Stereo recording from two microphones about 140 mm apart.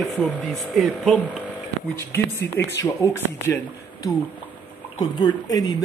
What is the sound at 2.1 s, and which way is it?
Speech, 15° left (ahead or behind).